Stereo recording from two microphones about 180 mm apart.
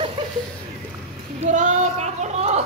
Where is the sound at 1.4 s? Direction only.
40° right (ahead or behind).